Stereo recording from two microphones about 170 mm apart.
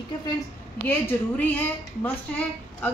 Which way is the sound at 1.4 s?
10° left (ahead or behind).